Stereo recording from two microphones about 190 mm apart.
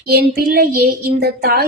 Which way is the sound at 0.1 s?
55° right (ahead or behind).